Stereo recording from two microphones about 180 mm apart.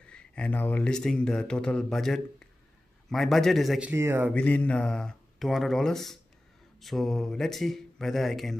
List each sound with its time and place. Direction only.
0.0 s speech: 5° left (ahead or behind)
3.9 s speech: 15° right (ahead or behind)
4.3 s speech: 5° left (ahead or behind)